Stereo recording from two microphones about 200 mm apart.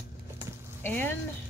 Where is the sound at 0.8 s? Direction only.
10° left (ahead or behind).